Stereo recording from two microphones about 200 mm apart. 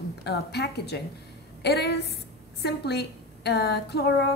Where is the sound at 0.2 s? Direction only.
55° left (ahead or behind).